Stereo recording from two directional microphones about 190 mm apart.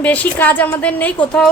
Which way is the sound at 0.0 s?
10° left (ahead or behind).